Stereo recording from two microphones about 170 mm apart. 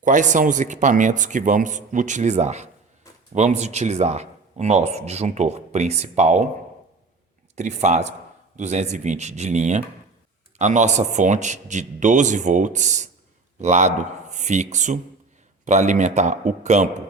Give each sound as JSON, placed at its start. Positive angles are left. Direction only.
{"t": 0.0, "sound": "a man's voice", "side_deg": -45}
{"t": 7.5, "sound": "a man's voice", "side_deg": -45}